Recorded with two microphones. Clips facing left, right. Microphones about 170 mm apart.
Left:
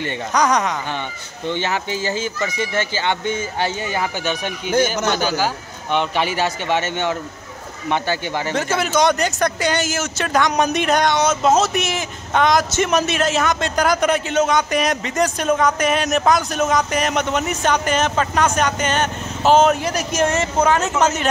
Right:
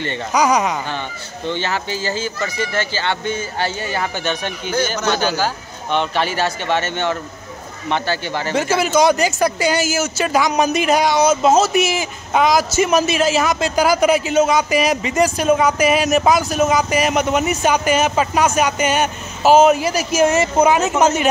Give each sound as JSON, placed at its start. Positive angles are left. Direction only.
{"t": 0.3, "sound": "speech", "side_deg": -5}
{"t": 1.5, "sound": "speech", "side_deg": 15}
{"t": 8.5, "sound": "speech", "side_deg": -5}